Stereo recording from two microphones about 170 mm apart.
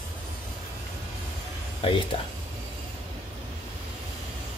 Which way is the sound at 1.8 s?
30° left (ahead or behind).